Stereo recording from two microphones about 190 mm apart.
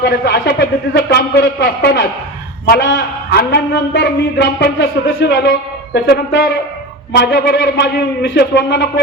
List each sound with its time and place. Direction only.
0.3 s a man's voice: 60° left (ahead or behind)